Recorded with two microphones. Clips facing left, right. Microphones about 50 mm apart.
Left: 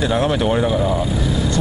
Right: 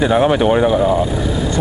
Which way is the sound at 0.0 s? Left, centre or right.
Centre.